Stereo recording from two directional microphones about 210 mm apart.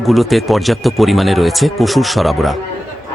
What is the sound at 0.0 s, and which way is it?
Speech, centre (ahead or behind).